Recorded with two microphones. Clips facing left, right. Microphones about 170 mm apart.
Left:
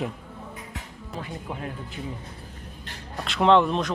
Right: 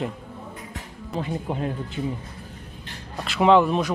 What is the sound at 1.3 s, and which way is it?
Speech, 30° right (ahead or behind).